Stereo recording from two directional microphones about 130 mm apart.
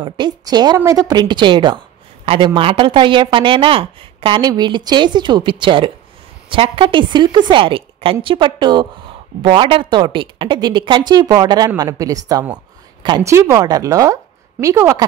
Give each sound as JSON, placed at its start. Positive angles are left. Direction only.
{"t": 0.0, "sound": "speech", "side_deg": -35}